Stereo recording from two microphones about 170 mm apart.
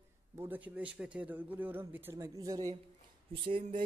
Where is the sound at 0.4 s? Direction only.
10° right (ahead or behind).